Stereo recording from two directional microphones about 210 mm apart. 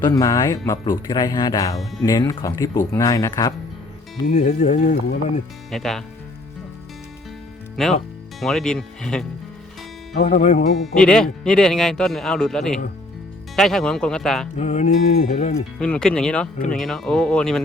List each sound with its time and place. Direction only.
0.0 s speech: 15° left (ahead or behind)
4.3 s music: 35° left (ahead or behind)
5.7 s speech: centre (ahead or behind)
7.8 s speech: centre (ahead or behind)
10.2 s music: 35° left (ahead or behind)
10.8 s speech: 5° left (ahead or behind)
14.5 s music: 35° left (ahead or behind)
15.8 s speech: 5° left (ahead or behind)